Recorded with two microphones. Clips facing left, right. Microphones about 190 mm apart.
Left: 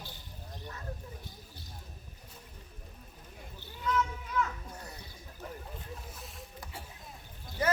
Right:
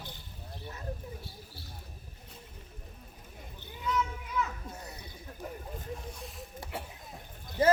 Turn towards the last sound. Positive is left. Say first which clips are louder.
# right 6 dB
turn(degrees=-25)  # may be behind; listen again after turning